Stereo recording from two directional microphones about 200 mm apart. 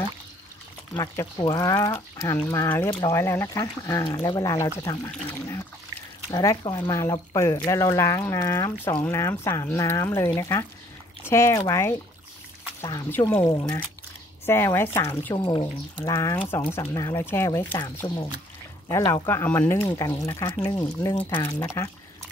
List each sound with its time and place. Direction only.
0.9 s speech: 20° left (ahead or behind)